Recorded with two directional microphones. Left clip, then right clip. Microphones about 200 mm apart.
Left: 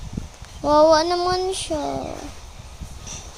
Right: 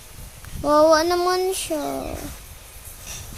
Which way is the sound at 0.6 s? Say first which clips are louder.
Left 1 dB; 15° right (ahead or behind).